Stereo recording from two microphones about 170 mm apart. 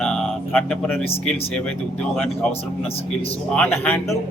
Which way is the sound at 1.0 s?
35° left (ahead or behind).